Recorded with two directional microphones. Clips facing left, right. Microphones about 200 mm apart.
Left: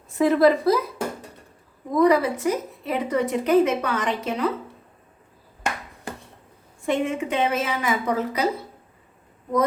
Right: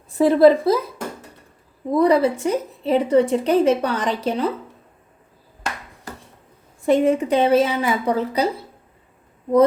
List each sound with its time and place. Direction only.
0.2 s a woman's voice: 30° right (ahead or behind)
1.9 s a woman's voice: 30° right (ahead or behind)
6.8 s a woman's voice: 35° right (ahead or behind)